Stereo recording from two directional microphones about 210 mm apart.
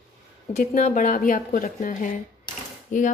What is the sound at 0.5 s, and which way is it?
Speech, 40° left (ahead or behind).